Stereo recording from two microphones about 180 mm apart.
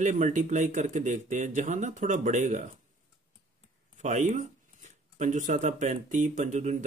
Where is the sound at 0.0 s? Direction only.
45° right (ahead or behind).